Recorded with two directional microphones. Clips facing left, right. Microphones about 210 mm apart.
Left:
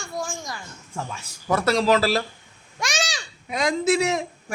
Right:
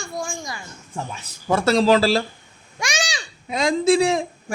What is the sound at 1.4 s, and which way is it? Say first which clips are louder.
Speech: right 3 dB; 30° right (ahead or behind).